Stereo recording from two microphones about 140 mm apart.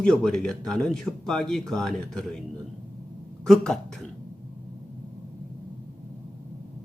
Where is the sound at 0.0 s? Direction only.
5° left (ahead or behind).